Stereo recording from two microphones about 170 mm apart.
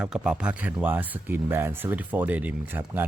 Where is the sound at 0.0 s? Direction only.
5° right (ahead or behind).